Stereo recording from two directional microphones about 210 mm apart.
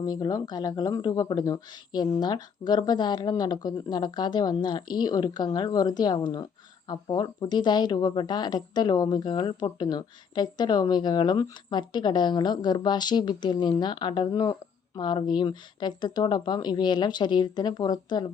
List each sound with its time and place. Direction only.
0.0 s a woman's voice: 20° left (ahead or behind)